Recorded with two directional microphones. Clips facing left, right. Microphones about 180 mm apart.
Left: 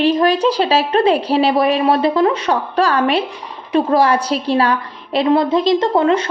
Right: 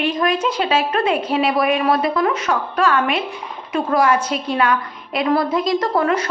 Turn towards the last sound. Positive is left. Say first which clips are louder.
# left 4 dB
turn(degrees=25)  # may be behind; listen again after turning